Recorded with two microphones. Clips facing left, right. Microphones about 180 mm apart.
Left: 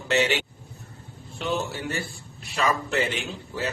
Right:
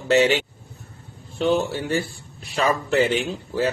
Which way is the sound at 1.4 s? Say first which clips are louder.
Right 7 dB; 35° right (ahead or behind).